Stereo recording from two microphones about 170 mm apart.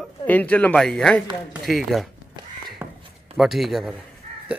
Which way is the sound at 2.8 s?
10° right (ahead or behind).